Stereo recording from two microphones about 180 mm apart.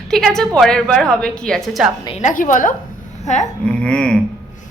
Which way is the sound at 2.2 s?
45° left (ahead or behind).